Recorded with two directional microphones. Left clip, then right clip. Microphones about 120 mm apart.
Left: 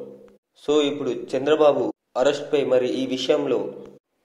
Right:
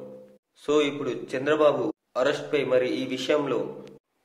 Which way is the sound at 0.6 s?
15° left (ahead or behind).